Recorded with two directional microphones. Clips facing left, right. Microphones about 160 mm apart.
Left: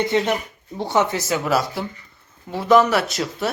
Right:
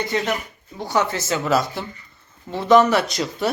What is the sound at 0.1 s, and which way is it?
Speech, 25° left (ahead or behind).